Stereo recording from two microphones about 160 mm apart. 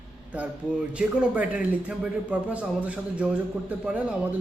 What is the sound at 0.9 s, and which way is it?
Speech, 5° right (ahead or behind).